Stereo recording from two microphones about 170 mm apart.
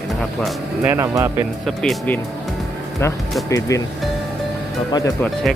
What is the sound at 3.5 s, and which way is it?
Speech, 20° left (ahead or behind).